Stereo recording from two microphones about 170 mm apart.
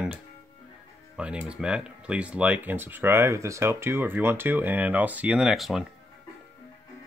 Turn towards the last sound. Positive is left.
turn(degrees=0)  # may be behind; listen again after turning